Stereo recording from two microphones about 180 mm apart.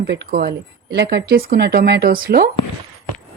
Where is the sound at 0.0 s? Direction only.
70° right (ahead or behind).